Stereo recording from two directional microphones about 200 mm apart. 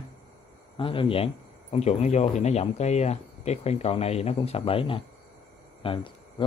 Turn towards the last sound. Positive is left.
turn(degrees=25)  # may be behind; listen again after turning